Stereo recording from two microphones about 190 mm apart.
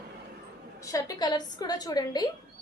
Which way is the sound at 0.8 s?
15° left (ahead or behind).